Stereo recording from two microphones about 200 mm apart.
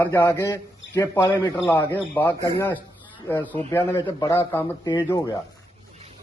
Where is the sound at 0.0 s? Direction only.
10° left (ahead or behind).